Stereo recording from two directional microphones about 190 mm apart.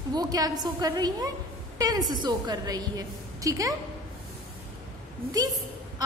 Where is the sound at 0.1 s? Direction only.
20° right (ahead or behind).